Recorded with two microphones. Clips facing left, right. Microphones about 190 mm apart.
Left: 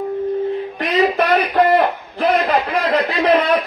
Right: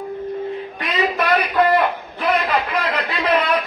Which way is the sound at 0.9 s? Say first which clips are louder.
Left 4 dB; 40° left (ahead or behind).